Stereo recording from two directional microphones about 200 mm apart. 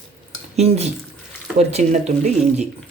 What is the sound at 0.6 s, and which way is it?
Speech, 30° right (ahead or behind).